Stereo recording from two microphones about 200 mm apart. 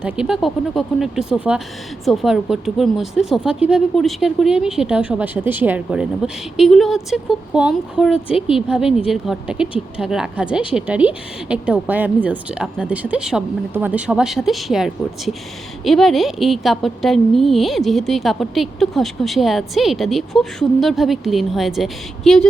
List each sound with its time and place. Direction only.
0.0 s a woman's voice: 5° right (ahead or behind)
8.1 s speech: 25° left (ahead or behind)
8.6 s a woman's voice: 5° right (ahead or behind)